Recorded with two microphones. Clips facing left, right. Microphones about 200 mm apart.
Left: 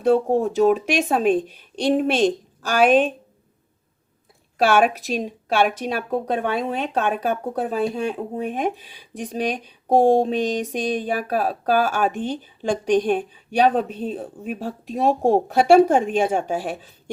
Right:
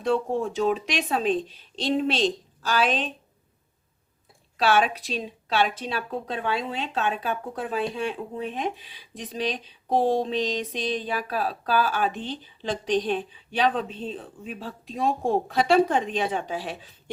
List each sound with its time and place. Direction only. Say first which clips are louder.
0.1 s speech: left 6 dB; 45° left (ahead or behind)
4.5 s speech: left 5 dB; 50° left (ahead or behind)